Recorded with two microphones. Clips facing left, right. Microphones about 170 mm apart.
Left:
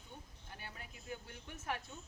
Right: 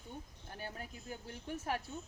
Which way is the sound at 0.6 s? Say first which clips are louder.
Right 9 dB; 40° right (ahead or behind).